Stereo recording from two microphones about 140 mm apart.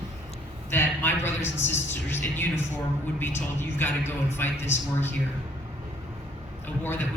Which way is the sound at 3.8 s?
15° left (ahead or behind).